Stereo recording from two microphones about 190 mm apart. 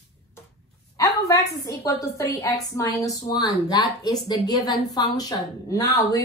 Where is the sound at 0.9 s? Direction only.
15° left (ahead or behind).